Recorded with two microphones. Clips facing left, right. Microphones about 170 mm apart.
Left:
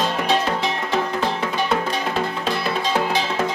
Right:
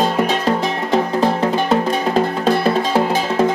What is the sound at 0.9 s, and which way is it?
Music, 35° right (ahead or behind).